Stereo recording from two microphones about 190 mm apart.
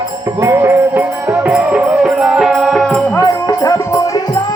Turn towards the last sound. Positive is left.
turn(degrees=15)  # may be behind; listen again after turning